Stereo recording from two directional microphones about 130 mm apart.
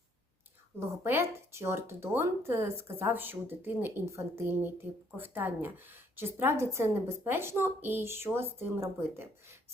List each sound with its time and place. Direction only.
0.8 s a woman's voice: 20° right (ahead or behind)